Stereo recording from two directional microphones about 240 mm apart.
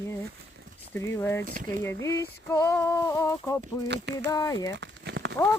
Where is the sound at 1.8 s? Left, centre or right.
Centre.